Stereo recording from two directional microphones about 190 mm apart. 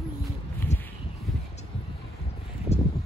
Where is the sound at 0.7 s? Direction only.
35° left (ahead or behind).